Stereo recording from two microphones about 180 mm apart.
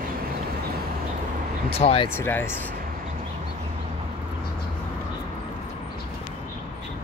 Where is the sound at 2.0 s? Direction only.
10° left (ahead or behind).